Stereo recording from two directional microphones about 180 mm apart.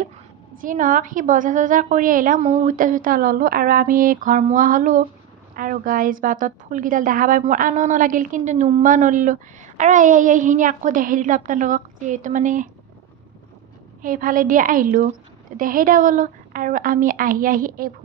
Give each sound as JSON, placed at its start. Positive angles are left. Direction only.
{"t": 0.6, "sound": "a woman's voice", "side_deg": -45}
{"t": 14.0, "sound": "a woman's voice", "side_deg": -50}